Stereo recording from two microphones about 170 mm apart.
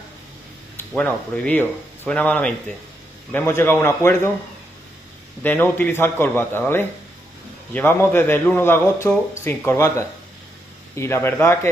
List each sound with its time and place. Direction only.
0.7 s a man's voice: 5° left (ahead or behind)
5.4 s a man's voice: 10° left (ahead or behind)